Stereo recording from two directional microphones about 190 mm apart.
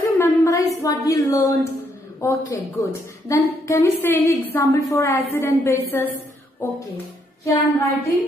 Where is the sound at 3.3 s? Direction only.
15° left (ahead or behind).